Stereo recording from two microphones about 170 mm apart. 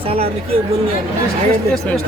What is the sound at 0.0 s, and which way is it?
Speech, 35° right (ahead or behind).